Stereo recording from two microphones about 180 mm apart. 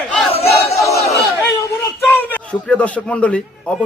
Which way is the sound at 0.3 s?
35° left (ahead or behind).